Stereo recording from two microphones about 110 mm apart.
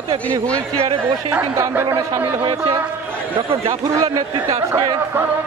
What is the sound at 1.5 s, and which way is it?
Speech, 25° right (ahead or behind).